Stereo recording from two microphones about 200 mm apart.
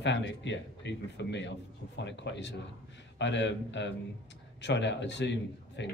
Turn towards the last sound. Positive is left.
turn(degrees=60)  # may be behind; listen again after turning